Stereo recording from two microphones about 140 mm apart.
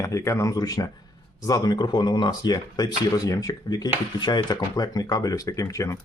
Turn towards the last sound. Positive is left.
turn(degrees=20)  # may be behind; listen again after turning